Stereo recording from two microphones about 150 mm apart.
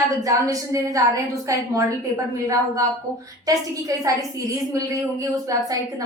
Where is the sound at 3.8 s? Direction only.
20° right (ahead or behind).